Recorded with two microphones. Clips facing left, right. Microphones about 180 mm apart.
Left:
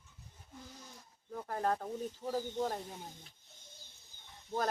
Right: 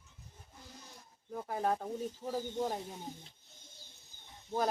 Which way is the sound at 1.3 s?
10° right (ahead or behind).